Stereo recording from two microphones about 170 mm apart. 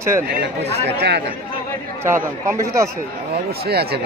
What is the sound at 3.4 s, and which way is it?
Speech, 65° right (ahead or behind).